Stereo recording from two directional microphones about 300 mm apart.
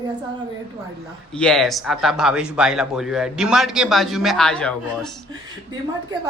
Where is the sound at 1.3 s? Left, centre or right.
Centre.